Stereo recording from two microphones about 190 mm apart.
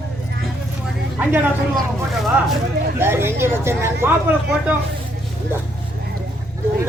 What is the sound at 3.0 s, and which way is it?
Speech, 10° right (ahead or behind).